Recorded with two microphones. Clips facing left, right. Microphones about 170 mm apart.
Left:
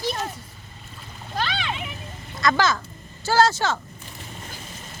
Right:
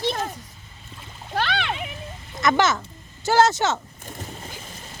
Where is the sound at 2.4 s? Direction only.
20° right (ahead or behind).